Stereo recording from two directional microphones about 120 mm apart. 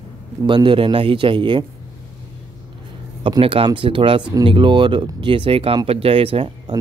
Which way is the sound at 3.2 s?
45° right (ahead or behind).